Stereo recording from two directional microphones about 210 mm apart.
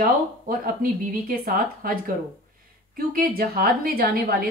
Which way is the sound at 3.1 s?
45° right (ahead or behind).